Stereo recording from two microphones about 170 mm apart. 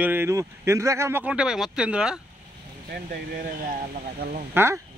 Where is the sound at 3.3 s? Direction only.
60° right (ahead or behind).